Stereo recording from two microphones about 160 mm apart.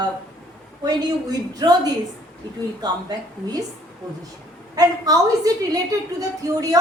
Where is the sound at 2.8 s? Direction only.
25° right (ahead or behind).